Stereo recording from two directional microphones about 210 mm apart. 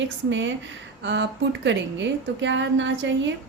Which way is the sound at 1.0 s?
55° right (ahead or behind).